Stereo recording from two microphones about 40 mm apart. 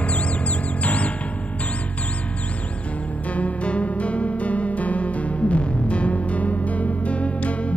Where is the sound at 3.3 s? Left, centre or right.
Left.